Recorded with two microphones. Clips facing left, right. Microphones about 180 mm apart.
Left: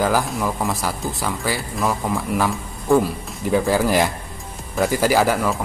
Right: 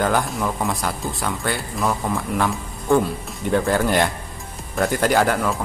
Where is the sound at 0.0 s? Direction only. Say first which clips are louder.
Left 1 dB; centre (ahead or behind).